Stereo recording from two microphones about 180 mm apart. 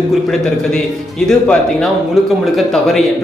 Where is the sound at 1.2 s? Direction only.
Centre (ahead or behind).